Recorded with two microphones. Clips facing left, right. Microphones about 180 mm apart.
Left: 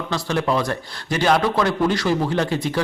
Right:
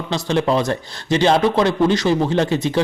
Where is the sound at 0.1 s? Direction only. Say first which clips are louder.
Right 4 dB; 25° right (ahead or behind).